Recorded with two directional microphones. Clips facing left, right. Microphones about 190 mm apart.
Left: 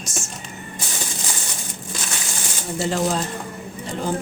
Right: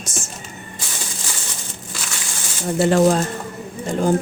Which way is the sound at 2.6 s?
55° right (ahead or behind).